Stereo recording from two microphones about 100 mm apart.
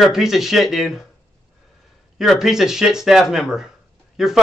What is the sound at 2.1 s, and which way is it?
A man's voice, 5° right (ahead or behind).